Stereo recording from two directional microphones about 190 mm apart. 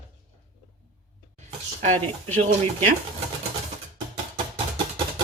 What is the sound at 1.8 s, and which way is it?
Speech, 35° right (ahead or behind).